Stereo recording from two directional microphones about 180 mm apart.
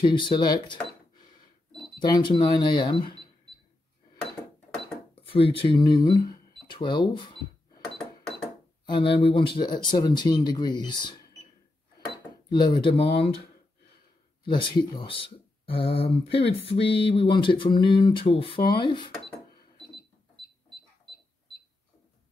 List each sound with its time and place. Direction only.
0.0 s speech: 25° left (ahead or behind)
5.1 s speech: 30° left (ahead or behind)
8.0 s cash register: 5° left (ahead or behind)
8.8 s speech: 25° left (ahead or behind)
12.4 s speech: 25° left (ahead or behind)
14.4 s speech: 25° left (ahead or behind)